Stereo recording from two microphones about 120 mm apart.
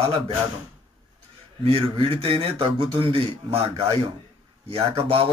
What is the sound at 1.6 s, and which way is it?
A man's voice, 50° right (ahead or behind).